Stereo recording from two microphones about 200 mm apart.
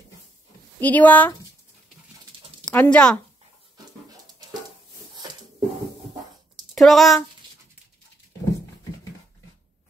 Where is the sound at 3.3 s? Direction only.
20° right (ahead or behind).